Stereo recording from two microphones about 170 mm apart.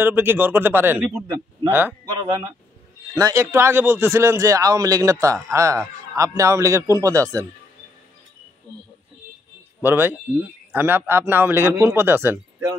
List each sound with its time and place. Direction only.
0.0 s speech: 10° right (ahead or behind)
1.2 s speech: 25° right (ahead or behind)
1.7 s speech: 10° right (ahead or behind)
2.0 s a man's voice: 25° right (ahead or behind)
9.8 s speech: 10° right (ahead or behind)